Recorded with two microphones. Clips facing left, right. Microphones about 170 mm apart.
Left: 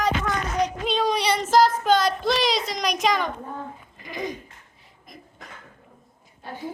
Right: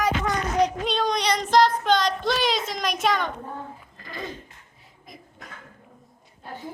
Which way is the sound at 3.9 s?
15° left (ahead or behind).